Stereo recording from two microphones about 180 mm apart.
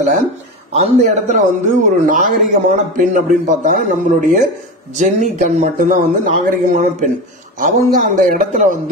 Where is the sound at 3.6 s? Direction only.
45° right (ahead or behind).